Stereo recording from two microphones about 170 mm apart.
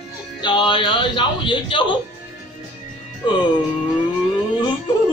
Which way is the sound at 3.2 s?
25° left (ahead or behind).